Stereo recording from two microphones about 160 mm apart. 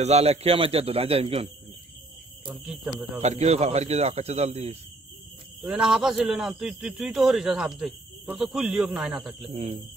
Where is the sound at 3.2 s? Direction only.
45° right (ahead or behind).